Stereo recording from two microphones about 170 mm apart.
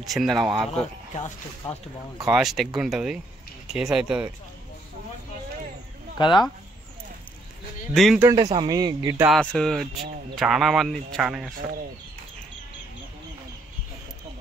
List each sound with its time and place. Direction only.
0.0 s a man's voice: centre (ahead or behind)
1.1 s speech: 45° left (ahead or behind)
2.2 s a man's voice: centre (ahead or behind)
6.1 s speech: 25° left (ahead or behind)
7.9 s a man's voice: centre (ahead or behind)
8.2 s speech: 20° right (ahead or behind)
9.3 s a man's voice: 5° left (ahead or behind)